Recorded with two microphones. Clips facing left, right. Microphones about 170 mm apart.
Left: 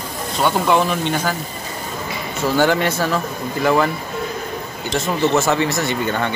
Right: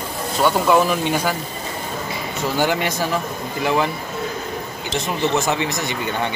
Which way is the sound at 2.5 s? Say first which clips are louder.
Left 4 dB; 15° right (ahead or behind).